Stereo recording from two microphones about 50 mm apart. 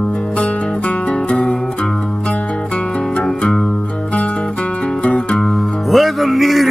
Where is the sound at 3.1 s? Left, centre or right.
Centre.